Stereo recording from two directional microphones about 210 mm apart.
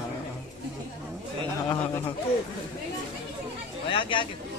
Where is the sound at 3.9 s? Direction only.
25° left (ahead or behind).